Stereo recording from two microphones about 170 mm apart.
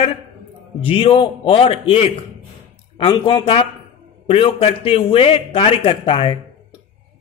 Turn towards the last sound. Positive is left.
turn(degrees=30)  # may be behind; listen again after turning